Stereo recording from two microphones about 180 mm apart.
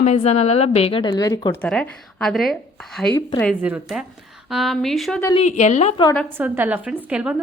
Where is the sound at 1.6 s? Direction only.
5° left (ahead or behind).